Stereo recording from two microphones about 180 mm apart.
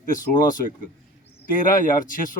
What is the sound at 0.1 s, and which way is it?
Speech, 50° left (ahead or behind).